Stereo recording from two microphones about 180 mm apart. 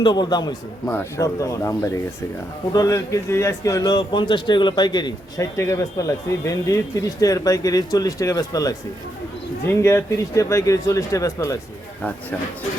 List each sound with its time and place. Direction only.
0.0 s a man's voice: 25° left (ahead or behind)
0.9 s a man's voice: 15° left (ahead or behind)